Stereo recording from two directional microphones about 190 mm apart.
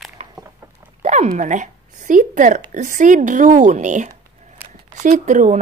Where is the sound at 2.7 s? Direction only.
40° right (ahead or behind).